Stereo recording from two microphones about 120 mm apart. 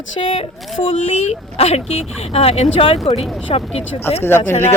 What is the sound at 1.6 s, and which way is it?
Speech, 60° left (ahead or behind).